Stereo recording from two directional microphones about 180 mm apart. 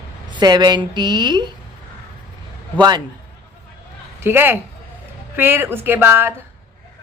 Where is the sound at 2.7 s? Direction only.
25° right (ahead or behind).